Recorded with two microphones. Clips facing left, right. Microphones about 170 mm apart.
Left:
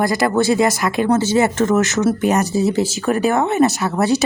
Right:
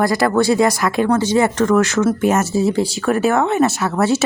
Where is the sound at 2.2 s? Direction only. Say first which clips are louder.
Right 1 dB; centre (ahead or behind).